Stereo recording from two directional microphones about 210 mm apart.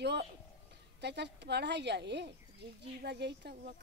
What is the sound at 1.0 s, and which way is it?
Speech, 55° right (ahead or behind).